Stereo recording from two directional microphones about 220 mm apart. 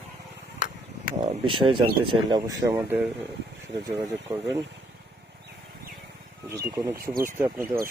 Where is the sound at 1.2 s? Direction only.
20° right (ahead or behind).